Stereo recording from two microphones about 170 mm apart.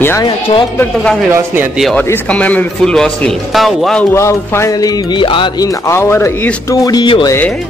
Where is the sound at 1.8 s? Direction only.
10° left (ahead or behind).